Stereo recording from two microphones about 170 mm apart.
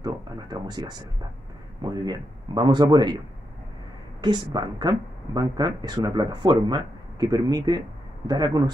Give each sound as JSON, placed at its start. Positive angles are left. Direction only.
{"t": 0.0, "sound": "a sound", "side_deg": -25}
{"t": 1.8, "sound": "a woman's voice", "side_deg": -25}
{"t": 4.2, "sound": "a woman's voice", "side_deg": -25}